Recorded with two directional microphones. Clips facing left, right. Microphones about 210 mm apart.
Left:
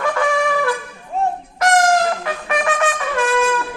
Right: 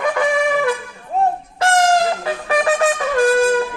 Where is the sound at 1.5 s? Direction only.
30° right (ahead or behind).